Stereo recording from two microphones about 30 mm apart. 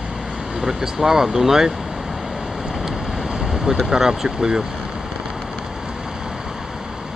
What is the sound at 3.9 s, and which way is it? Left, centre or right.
Speech, centre.